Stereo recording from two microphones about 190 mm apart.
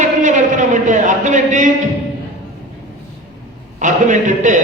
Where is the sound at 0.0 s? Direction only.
40° right (ahead or behind).